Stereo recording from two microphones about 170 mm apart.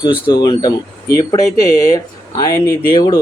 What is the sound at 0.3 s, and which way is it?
Speech, 25° left (ahead or behind).